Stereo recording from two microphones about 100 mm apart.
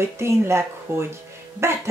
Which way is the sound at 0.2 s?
25° right (ahead or behind).